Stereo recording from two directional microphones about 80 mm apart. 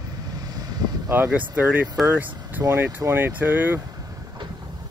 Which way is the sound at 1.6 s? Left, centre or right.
Right.